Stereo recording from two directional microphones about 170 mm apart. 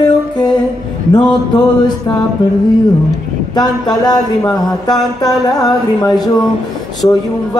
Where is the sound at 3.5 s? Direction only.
25° left (ahead or behind).